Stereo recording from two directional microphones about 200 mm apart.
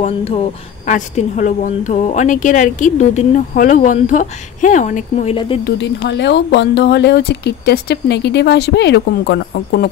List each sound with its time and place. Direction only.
0.0 s speech: 30° left (ahead or behind)
5.7 s speech: 60° left (ahead or behind)